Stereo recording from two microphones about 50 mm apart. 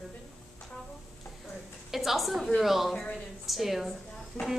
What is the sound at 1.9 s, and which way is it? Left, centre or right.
A woman's voice, centre.